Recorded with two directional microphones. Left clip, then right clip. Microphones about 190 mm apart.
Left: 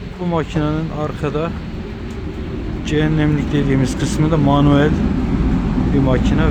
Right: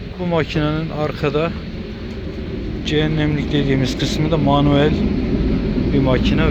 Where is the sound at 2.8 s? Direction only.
15° left (ahead or behind).